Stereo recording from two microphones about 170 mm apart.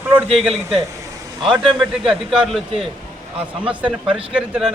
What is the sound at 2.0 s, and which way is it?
Speech, 30° right (ahead or behind).